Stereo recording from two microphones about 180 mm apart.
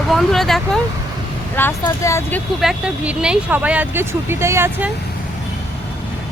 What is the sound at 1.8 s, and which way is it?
Speech, 15° left (ahead or behind).